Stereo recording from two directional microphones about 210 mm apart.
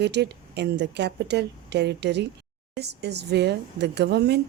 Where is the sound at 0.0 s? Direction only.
55° right (ahead or behind).